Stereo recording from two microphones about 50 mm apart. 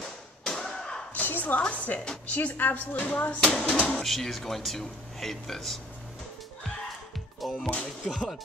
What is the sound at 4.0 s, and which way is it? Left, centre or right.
Speech, centre.